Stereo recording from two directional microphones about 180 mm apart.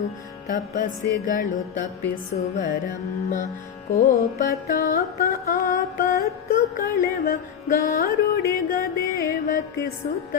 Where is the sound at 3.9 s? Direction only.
50° left (ahead or behind).